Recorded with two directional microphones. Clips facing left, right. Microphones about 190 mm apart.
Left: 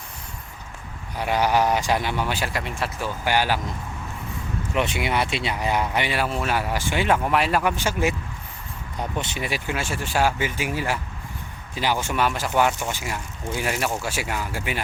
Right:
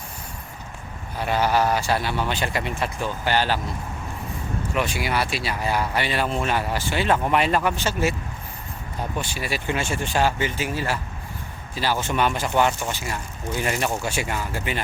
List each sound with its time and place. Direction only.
1.2 s speech: 15° left (ahead or behind)
3.2 s speech: 10° left (ahead or behind)
4.7 s speech: 20° left (ahead or behind)
7.3 s speech: 5° left (ahead or behind)
9.1 s speech: 20° left (ahead or behind)
9.6 s speech: 5° left (ahead or behind)